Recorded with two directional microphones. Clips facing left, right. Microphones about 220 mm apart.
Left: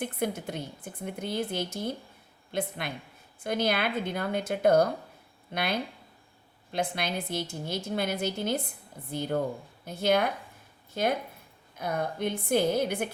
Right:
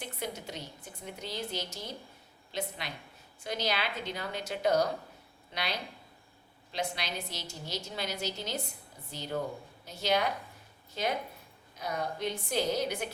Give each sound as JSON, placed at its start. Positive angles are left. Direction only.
{"t": 0.0, "sound": "a woman's voice", "side_deg": 55}